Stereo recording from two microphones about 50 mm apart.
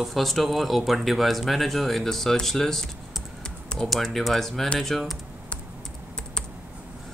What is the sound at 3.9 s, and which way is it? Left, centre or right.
Speech, centre.